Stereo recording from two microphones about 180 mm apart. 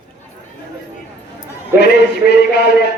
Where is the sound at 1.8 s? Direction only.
70° left (ahead or behind).